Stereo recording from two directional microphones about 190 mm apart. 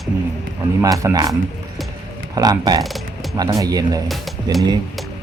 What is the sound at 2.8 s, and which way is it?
Music, centre (ahead or behind).